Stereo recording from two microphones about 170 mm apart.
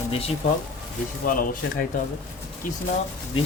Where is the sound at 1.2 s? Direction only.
55° left (ahead or behind).